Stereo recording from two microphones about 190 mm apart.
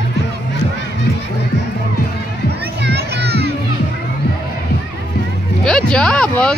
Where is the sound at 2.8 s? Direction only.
60° right (ahead or behind).